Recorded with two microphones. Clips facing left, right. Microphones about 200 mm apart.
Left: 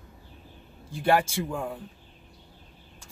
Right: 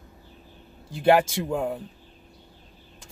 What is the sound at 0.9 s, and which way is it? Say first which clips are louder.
Speech: right 4 dB; 15° right (ahead or behind).